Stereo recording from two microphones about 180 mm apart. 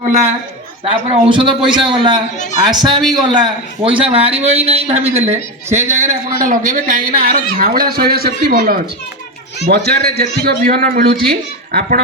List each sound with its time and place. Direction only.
1.1 s a man's voice: 30° right (ahead or behind); by 12.0 s 60° right (ahead or behind)